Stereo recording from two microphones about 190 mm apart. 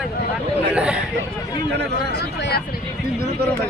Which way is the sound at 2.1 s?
55° left (ahead or behind).